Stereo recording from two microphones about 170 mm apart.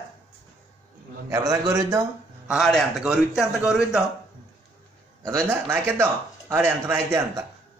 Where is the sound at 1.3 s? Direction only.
20° right (ahead or behind).